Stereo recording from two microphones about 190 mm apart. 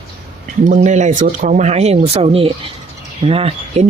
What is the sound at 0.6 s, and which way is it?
Speech, 40° right (ahead or behind).